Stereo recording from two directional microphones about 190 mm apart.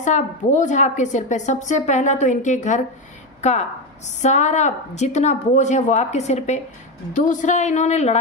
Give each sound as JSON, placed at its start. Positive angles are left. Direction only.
{"t": 0.0, "sound": "a woman's voice", "side_deg": 40}